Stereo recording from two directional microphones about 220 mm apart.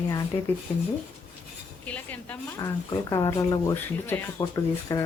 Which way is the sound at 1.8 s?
5° left (ahead or behind).